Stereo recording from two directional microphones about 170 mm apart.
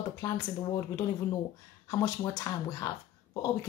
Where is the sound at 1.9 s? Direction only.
20° left (ahead or behind).